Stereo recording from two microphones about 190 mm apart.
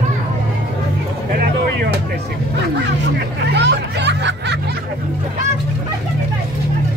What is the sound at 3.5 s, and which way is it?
Music, 65° right (ahead or behind).